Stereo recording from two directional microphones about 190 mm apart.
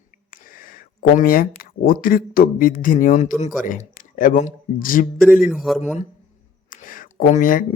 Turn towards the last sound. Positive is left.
turn(degrees=45)  # may be behind; listen again after turning